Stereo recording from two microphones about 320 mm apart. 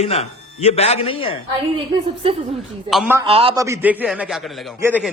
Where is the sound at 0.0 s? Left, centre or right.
Centre.